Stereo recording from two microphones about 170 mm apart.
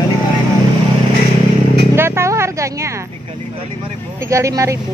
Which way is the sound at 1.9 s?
15° right (ahead or behind).